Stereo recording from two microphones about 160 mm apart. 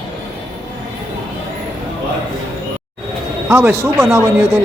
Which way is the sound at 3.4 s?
15° right (ahead or behind).